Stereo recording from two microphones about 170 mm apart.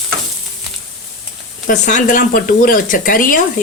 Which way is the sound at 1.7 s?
50° left (ahead or behind).